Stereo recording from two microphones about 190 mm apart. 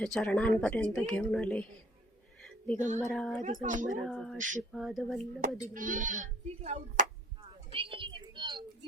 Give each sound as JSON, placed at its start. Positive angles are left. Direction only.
{"t": 0.0, "sound": "speech", "side_deg": 5}
{"t": 2.4, "sound": "a sound", "side_deg": 5}
{"t": 2.7, "sound": "speech", "side_deg": -40}
{"t": 3.0, "sound": "speech", "side_deg": 0}
{"t": 3.5, "sound": "speech", "side_deg": -40}
{"t": 4.0, "sound": "speech", "side_deg": 0}
{"t": 4.4, "sound": "speech", "side_deg": -40}
{"t": 4.7, "sound": "speech", "side_deg": 0}
{"t": 5.7, "sound": "speech", "side_deg": -45}
{"t": 7.7, "sound": "a sound", "side_deg": -30}